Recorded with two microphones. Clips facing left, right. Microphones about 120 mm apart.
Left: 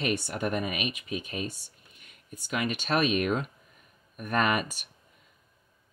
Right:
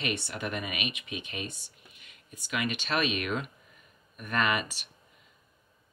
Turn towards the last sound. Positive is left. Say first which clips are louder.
# left 2 dB
turn(degrees=45)  # may be behind; listen again after turning